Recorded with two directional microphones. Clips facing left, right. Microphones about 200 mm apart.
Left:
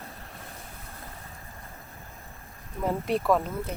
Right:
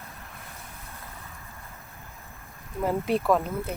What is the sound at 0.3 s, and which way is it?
Vehicle, 35° left (ahead or behind).